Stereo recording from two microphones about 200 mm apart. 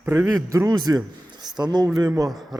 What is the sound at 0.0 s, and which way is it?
A man's voice, 10° right (ahead or behind).